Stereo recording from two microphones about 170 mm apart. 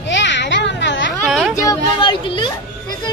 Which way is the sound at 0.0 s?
90° left.